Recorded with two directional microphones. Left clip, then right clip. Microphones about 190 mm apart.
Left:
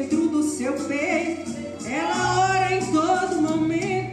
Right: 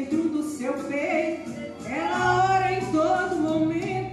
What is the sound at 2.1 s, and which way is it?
Music, 50° left (ahead or behind).